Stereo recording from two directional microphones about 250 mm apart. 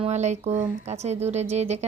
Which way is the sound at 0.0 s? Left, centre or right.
Right.